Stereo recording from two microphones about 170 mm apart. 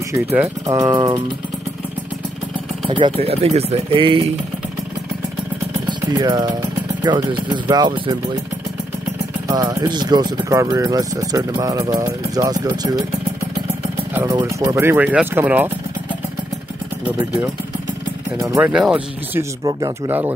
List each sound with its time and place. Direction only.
0.1 s speech: 15° right (ahead or behind)
2.9 s speech: 30° right (ahead or behind)
5.9 s speech: 25° right (ahead or behind)
9.5 s speech: 20° right (ahead or behind)
14.1 s speech: 20° right (ahead or behind)
18.4 s speech: 15° right (ahead or behind)
18.7 s speech: 5° right (ahead or behind)